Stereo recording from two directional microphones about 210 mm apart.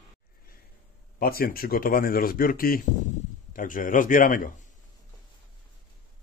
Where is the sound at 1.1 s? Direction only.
45° left (ahead or behind).